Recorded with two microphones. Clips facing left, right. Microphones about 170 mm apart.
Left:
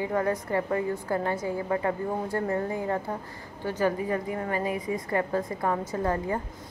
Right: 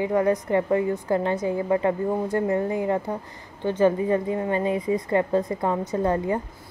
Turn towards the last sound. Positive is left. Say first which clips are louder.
# right 5 dB
turn(degrees=-20)  # may be behind; listen again after turning